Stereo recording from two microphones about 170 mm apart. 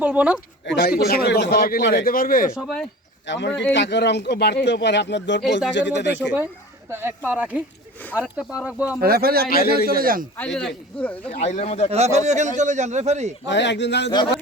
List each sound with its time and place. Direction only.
0.0 s speech: 5° right (ahead or behind)
0.6 s a man's voice: 65° left (ahead or behind)
2.6 s speech: centre (ahead or behind)
3.2 s speech: 90° left
7.3 s speech: 10° right (ahead or behind)
9.0 s a man's voice: 65° right (ahead or behind)
10.3 s speech: 5° left (ahead or behind)
11.3 s speech: 45° left (ahead or behind)
11.9 s a man's voice: 40° right (ahead or behind)
13.5 s speech: 90° left